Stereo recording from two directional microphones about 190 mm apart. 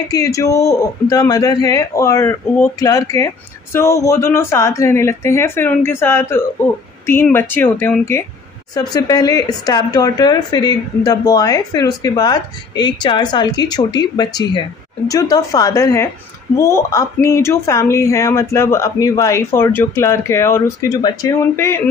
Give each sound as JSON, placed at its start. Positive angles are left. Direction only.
{"t": 0.1, "sound": "a woman's voice", "side_deg": 15}